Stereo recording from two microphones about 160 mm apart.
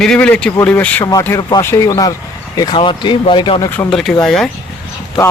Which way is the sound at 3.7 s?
10° left (ahead or behind).